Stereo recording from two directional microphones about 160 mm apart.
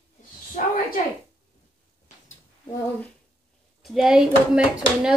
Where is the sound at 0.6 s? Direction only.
50° left (ahead or behind).